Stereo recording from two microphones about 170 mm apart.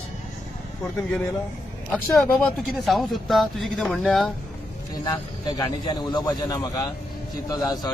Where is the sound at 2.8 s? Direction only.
Centre (ahead or behind).